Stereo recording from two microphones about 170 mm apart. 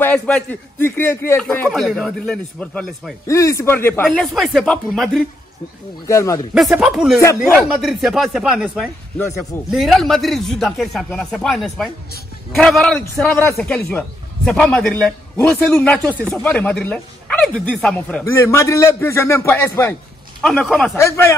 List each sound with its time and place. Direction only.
0.0 s a man's voice: 10° left (ahead or behind)
1.7 s speech: centre (ahead or behind)
3.3 s a man's voice: 15° left (ahead or behind)
4.1 s speech: centre (ahead or behind)
6.0 s a man's voice: 20° left (ahead or behind)
6.5 s a man's voice: 5° right (ahead or behind); by 20.0 s 15° left (ahead or behind)
20.3 s speech: centre (ahead or behind)
20.9 s a man's voice: 15° left (ahead or behind)